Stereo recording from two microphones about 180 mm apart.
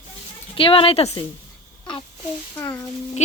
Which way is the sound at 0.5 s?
30° left (ahead or behind).